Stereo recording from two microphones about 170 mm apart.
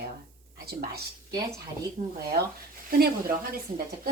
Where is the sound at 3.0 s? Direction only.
60° right (ahead or behind).